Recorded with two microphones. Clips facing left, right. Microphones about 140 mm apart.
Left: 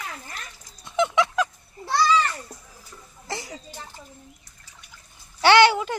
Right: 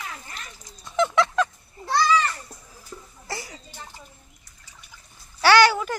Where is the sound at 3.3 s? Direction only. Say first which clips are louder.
Left 1 dB; 20° left (ahead or behind).